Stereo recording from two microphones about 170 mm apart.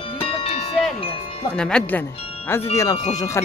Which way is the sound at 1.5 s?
5° left (ahead or behind).